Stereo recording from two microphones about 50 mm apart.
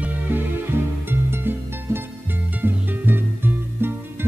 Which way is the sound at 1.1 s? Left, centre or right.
Right.